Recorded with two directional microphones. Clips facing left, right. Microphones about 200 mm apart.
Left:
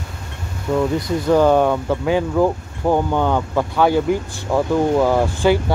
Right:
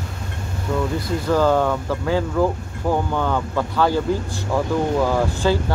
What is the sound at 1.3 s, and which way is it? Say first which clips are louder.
Speech: left 4 dB; 20° left (ahead or behind).